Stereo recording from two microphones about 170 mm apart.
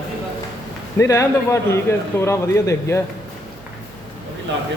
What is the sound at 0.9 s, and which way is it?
A man's voice, 15° left (ahead or behind).